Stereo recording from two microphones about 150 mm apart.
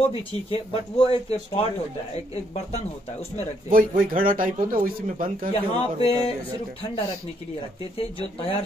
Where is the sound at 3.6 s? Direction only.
65° right (ahead or behind).